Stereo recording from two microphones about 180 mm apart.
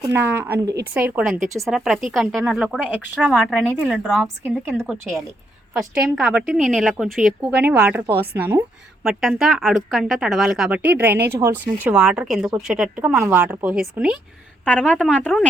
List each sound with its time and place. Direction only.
0.0 s speech: 10° right (ahead or behind)
8.1 s speech: 60° right (ahead or behind)
8.4 s speech: 15° right (ahead or behind)
9.0 s speech: centre (ahead or behind)
14.6 s a woman's voice: 5° left (ahead or behind)
14.9 s speech: 5° right (ahead or behind)